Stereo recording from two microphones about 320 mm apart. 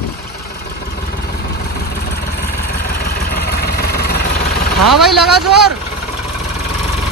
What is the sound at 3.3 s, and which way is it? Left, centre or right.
Vehicle, left.